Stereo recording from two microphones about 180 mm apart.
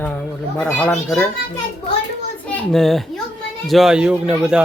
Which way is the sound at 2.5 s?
5° left (ahead or behind).